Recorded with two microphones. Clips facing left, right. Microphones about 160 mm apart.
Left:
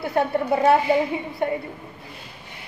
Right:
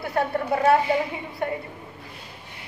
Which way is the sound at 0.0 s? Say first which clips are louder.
Left 3 dB; 25° left (ahead or behind).